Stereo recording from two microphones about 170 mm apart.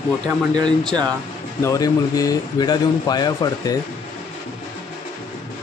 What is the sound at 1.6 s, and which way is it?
Speech, 20° left (ahead or behind).